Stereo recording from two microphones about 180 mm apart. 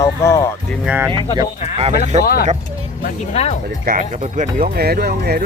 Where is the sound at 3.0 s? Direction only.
35° left (ahead or behind).